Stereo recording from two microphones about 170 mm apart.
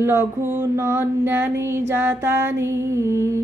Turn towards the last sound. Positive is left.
turn(degrees=-15)  # may be behind; listen again after turning